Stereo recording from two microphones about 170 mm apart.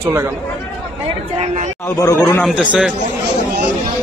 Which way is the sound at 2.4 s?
5° right (ahead or behind).